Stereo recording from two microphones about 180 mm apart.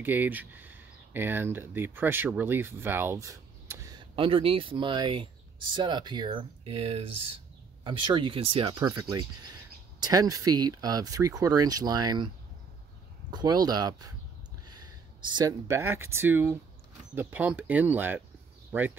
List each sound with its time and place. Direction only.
0.0 s speech: 10° right (ahead or behind)
13.3 s speech: 20° right (ahead or behind)
15.2 s speech: 20° right (ahead or behind)